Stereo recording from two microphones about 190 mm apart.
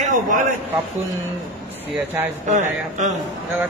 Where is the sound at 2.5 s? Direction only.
40° right (ahead or behind).